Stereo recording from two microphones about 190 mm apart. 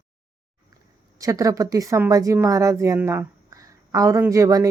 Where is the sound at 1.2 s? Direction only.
15° right (ahead or behind).